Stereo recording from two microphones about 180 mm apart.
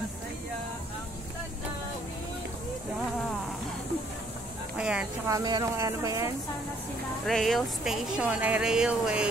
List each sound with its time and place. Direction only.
4.7 s a sound: 5° right (ahead or behind)
5.3 s a woman's voice: 20° right (ahead or behind)
7.2 s speech: centre (ahead or behind)